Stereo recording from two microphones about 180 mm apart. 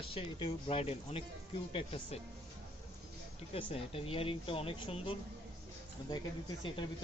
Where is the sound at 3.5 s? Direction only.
30° left (ahead or behind).